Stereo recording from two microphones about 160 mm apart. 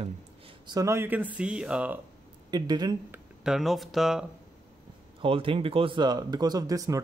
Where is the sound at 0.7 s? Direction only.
20° right (ahead or behind).